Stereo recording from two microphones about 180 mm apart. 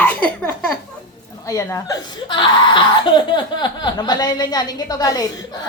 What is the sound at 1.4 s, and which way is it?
Speech, 15° left (ahead or behind).